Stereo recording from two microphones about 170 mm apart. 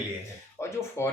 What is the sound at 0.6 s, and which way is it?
Speech, 15° left (ahead or behind).